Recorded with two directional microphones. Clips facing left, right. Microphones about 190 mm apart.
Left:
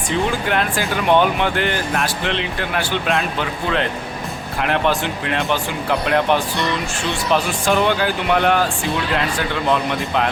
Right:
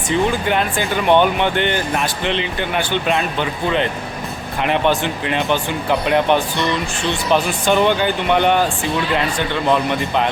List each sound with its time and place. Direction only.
0.1 s speech: centre (ahead or behind)
4.6 s speech: centre (ahead or behind)